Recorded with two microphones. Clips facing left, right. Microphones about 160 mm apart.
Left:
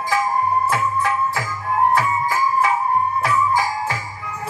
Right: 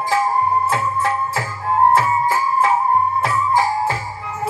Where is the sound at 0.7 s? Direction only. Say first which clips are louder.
Right 1 dB; 30° right (ahead or behind).